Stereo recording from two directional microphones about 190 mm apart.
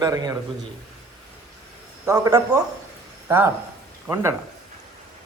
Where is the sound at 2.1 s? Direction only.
20° right (ahead or behind).